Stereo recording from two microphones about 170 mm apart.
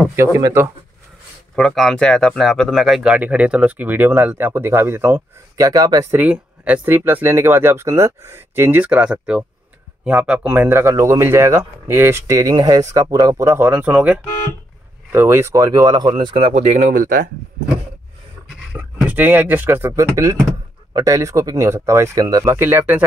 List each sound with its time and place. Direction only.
0.1 s speech: 15° right (ahead or behind)
1.5 s speech: centre (ahead or behind); by 17.3 s 55° right (ahead or behind)
18.7 s speech: 10° right (ahead or behind)